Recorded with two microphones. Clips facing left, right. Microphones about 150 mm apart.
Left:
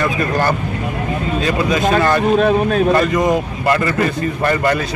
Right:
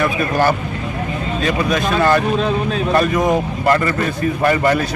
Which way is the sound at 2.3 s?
55° left (ahead or behind).